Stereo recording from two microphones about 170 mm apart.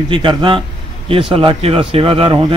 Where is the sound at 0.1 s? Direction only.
30° right (ahead or behind).